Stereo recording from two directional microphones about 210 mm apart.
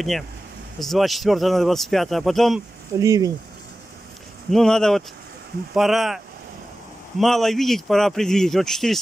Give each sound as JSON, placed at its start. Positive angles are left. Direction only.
{"t": 0.7, "sound": "a man's voice", "side_deg": 0}
{"t": 2.9, "sound": "speech", "side_deg": -15}
{"t": 4.5, "sound": "a man's voice", "side_deg": 0}